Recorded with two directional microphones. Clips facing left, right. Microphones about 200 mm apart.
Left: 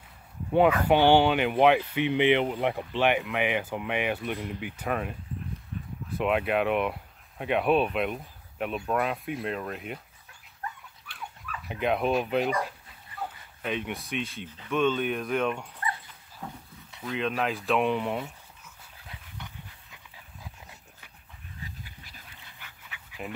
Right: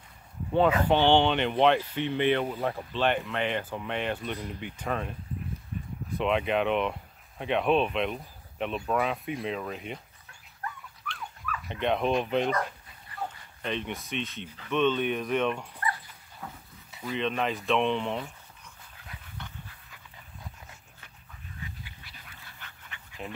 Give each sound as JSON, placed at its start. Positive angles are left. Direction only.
{"t": 0.8, "sound": "speech", "side_deg": 10}
{"t": 6.1, "sound": "speech", "side_deg": 5}
{"t": 11.6, "sound": "speech", "side_deg": 5}
{"t": 16.9, "sound": "speech", "side_deg": 0}
{"t": 19.3, "sound": "dog", "side_deg": 10}
{"t": 21.6, "sound": "dog", "side_deg": 45}
{"t": 22.6, "sound": "dog", "side_deg": 10}